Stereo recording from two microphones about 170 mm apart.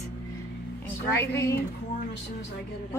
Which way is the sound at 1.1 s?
15° left (ahead or behind).